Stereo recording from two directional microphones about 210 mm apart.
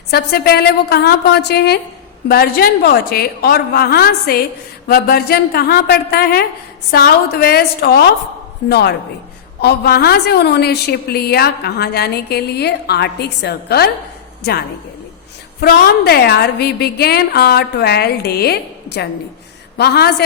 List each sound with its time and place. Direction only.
0.1 s a woman's voice: 50° left (ahead or behind)
15.6 s a woman's voice: 50° left (ahead or behind)